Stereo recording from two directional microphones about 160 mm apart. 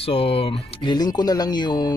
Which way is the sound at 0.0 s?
35° left (ahead or behind).